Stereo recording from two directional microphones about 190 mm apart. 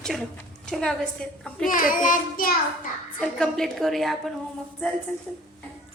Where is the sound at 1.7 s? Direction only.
45° left (ahead or behind).